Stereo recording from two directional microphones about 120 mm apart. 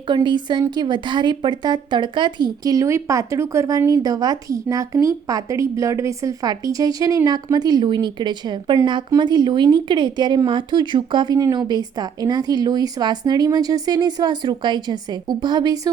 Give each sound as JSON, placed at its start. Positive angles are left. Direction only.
{"t": 0.1, "sound": "a woman's voice", "side_deg": -40}